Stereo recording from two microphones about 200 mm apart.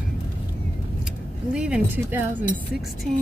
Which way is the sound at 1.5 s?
5° right (ahead or behind).